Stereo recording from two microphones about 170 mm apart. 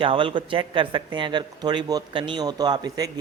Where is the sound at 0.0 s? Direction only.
30° right (ahead or behind).